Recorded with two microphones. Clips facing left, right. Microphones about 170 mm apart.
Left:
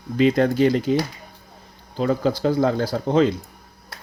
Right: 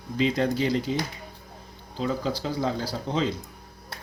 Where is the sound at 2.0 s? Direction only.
55° left (ahead or behind).